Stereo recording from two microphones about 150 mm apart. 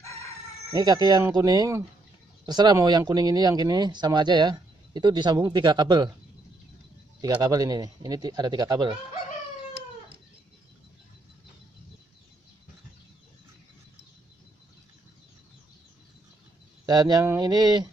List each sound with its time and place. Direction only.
0.0 s chicken: 20° left (ahead or behind)
0.7 s speech: 25° right (ahead or behind)
7.4 s speech: 25° right (ahead or behind)
16.8 s speech: 25° right (ahead or behind)